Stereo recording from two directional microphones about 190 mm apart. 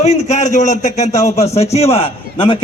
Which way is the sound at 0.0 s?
35° left (ahead or behind).